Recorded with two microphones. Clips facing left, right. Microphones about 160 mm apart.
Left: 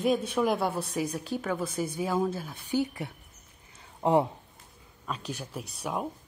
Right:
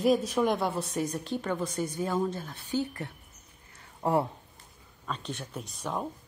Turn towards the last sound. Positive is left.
turn(degrees=10)  # may be behind; listen again after turning